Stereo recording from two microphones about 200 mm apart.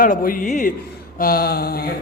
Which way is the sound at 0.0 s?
45° left (ahead or behind).